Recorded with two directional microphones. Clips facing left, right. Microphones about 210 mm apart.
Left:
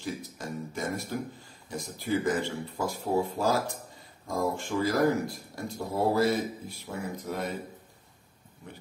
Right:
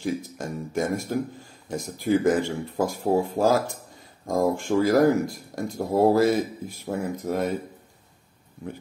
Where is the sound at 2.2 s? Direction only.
45° right (ahead or behind).